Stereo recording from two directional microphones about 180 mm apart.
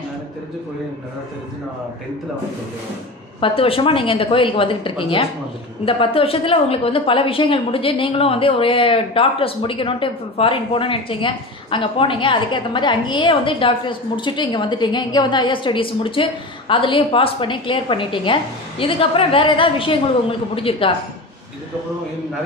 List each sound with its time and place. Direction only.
3.3 s a woman's voice: 30° left (ahead or behind)